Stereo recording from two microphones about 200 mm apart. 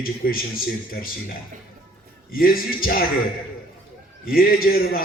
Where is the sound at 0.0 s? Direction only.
45° left (ahead or behind).